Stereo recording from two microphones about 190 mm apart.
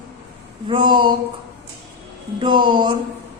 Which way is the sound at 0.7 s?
25° right (ahead or behind).